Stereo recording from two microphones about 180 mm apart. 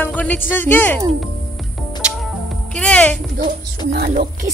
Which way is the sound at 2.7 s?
5° left (ahead or behind).